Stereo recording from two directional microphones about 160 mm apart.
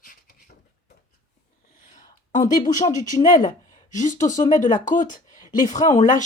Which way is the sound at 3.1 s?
55° left (ahead or behind).